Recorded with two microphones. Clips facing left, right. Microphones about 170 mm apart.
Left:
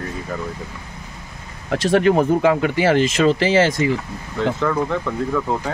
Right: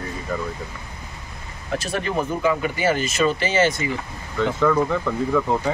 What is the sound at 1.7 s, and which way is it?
Speech, 90° left.